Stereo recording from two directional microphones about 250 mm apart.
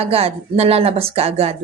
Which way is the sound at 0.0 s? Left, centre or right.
Right.